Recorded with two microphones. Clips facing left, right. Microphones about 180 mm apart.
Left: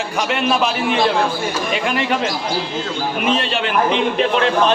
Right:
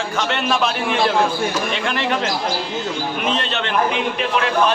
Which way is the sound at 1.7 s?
10° left (ahead or behind).